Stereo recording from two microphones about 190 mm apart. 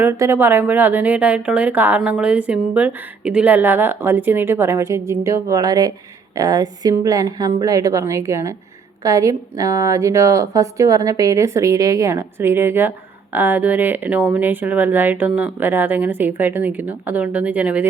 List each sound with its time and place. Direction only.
0.0 s speech: 15° right (ahead or behind)